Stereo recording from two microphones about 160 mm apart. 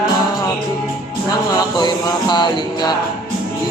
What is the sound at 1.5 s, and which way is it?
Music, 25° left (ahead or behind).